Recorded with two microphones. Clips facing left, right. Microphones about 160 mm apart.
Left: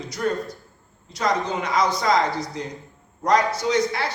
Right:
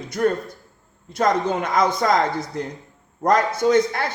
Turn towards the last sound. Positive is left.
turn(degrees=-50)  # may be behind; listen again after turning